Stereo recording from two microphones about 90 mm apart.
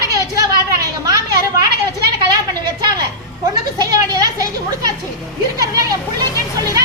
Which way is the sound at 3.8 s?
45° right (ahead or behind).